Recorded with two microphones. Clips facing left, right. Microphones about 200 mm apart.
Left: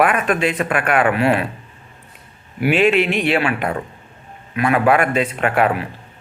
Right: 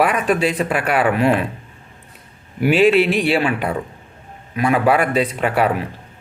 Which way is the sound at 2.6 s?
35° right (ahead or behind).